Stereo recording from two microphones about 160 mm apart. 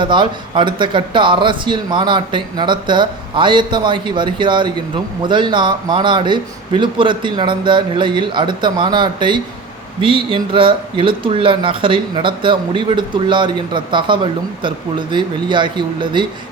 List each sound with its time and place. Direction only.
0.0 s speech: 30° right (ahead or behind)